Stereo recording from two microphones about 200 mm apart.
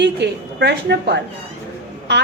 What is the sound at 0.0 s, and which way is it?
A woman's voice, 55° right (ahead or behind).